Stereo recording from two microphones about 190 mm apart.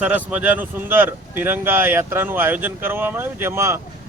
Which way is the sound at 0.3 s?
10° right (ahead or behind).